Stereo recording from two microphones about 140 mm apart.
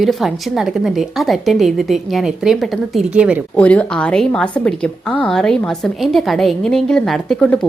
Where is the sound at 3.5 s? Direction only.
10° left (ahead or behind).